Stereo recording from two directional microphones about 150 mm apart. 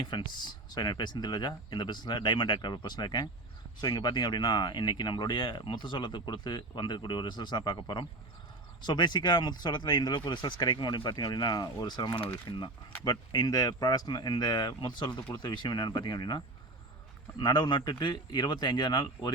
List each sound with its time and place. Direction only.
0.0 s speech: 30° left (ahead or behind)
12.1 s speech: 10° left (ahead or behind)
12.5 s speech: 35° left (ahead or behind)